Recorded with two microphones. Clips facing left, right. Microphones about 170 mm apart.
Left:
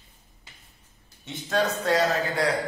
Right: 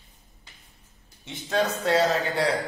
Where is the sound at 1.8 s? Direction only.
25° right (ahead or behind).